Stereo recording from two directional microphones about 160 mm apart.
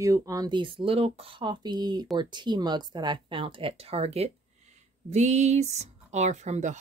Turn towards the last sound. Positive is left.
turn(degrees=-45)  # may be behind; listen again after turning